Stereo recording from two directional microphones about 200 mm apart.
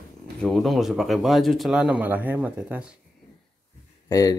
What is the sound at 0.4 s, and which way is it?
Speech, centre (ahead or behind).